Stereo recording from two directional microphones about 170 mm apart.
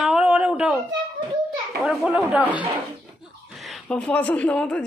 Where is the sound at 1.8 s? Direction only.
5° right (ahead or behind).